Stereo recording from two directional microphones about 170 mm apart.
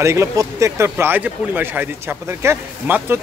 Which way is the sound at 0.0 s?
15° right (ahead or behind).